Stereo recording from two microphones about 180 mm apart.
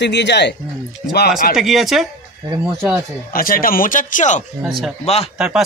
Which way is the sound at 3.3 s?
50° left (ahead or behind).